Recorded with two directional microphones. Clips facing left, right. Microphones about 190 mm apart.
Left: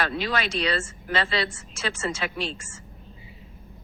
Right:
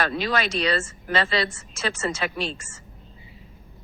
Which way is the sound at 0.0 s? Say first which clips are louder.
Right 2 dB; 40° right (ahead or behind).